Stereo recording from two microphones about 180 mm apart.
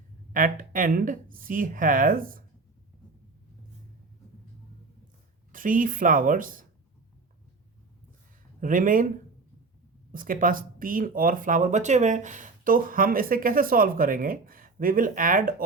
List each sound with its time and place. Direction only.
0.3 s speech: 50° right (ahead or behind)
5.5 s speech: 50° right (ahead or behind)
8.6 s speech: 50° right (ahead or behind)
10.1 s speech: 50° right (ahead or behind)